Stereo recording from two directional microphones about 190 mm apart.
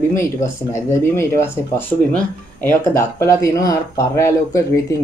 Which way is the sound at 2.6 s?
15° left (ahead or behind).